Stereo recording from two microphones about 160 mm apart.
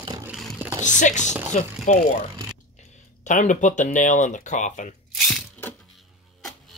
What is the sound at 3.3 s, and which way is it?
Speech, 50° left (ahead or behind).